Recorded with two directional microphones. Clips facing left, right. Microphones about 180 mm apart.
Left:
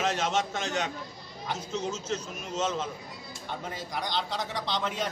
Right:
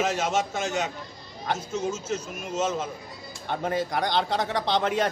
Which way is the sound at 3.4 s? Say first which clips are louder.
Right 10 dB; 65° right (ahead or behind).